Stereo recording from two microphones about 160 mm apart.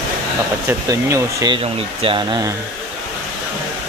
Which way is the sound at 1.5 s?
35° right (ahead or behind).